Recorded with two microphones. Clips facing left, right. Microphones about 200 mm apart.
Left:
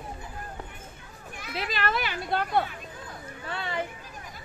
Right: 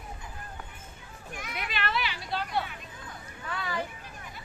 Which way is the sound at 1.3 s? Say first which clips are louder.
Left 4 dB; 35° left (ahead or behind).